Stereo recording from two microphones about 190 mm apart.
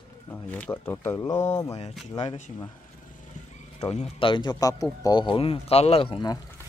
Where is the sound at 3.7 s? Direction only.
35° left (ahead or behind).